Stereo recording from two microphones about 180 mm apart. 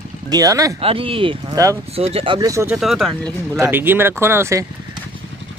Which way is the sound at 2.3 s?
20° right (ahead or behind).